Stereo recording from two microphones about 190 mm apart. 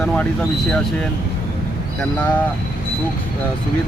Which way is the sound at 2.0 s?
5° left (ahead or behind).